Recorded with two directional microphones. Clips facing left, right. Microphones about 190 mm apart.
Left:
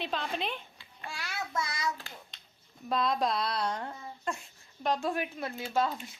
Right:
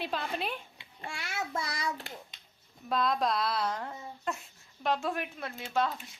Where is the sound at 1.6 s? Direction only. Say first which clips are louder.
Even; 30° right (ahead or behind).